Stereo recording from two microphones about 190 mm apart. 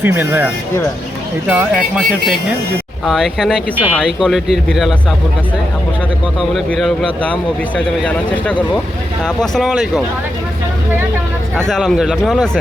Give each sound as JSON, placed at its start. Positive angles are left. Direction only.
{"t": 0.0, "sound": "speech", "side_deg": -10}
{"t": 3.1, "sound": "speech", "side_deg": 0}
{"t": 6.5, "sound": "speech", "side_deg": 0}
{"t": 9.2, "sound": "speech", "side_deg": 0}
{"t": 11.7, "sound": "speech", "side_deg": 0}